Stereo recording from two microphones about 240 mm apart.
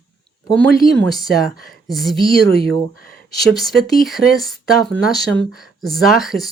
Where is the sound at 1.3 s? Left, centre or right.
Left.